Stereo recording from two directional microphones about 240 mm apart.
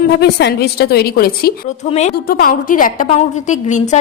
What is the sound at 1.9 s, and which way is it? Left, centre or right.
A woman's voice, left.